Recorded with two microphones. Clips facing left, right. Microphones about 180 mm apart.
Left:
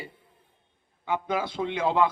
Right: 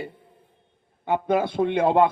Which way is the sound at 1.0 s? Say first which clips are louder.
Right 6 dB; 55° right (ahead or behind).